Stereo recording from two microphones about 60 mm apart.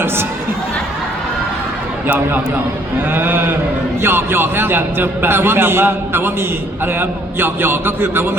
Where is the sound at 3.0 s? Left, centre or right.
Right.